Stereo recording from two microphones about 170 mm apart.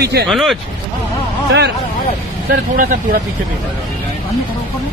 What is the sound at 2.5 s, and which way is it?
Speech, 60° right (ahead or behind).